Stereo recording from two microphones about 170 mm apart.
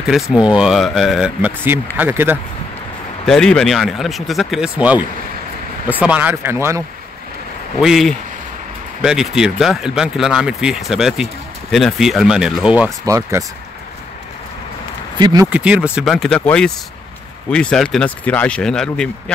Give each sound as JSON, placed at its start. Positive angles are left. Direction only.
{"t": 0.1, "sound": "speech", "side_deg": -5}
{"t": 3.3, "sound": "speech", "side_deg": 5}
{"t": 7.8, "sound": "speech", "side_deg": 0}
{"t": 13.0, "sound": "speech", "side_deg": -20}
{"t": 15.1, "sound": "speech", "side_deg": -25}
{"t": 15.5, "sound": "speech", "side_deg": -5}